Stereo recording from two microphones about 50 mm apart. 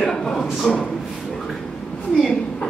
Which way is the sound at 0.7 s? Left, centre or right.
Centre.